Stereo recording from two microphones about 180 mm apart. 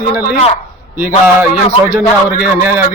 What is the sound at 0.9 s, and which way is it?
Speech, 10° right (ahead or behind).